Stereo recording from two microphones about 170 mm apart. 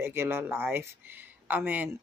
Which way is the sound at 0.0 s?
15° right (ahead or behind).